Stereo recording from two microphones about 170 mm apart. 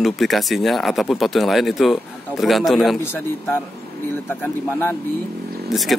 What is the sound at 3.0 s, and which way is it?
Speech, 10° left (ahead or behind).